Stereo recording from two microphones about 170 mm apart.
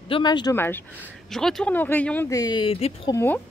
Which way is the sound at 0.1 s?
25° left (ahead or behind).